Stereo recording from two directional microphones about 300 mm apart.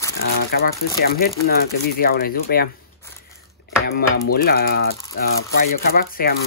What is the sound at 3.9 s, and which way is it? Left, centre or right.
Speech, left.